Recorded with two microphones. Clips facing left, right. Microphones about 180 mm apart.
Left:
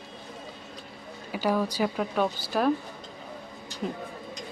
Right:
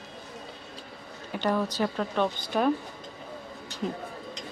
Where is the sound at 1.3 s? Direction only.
10° left (ahead or behind).